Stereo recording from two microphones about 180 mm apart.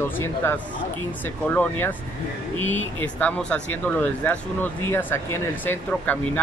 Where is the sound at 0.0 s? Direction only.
15° left (ahead or behind).